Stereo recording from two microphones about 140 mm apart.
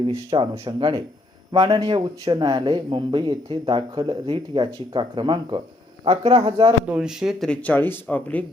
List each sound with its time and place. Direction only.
0.3 s speech: 40° right (ahead or behind)
6.8 s speech: 5° right (ahead or behind); by 8.4 s 10° left (ahead or behind)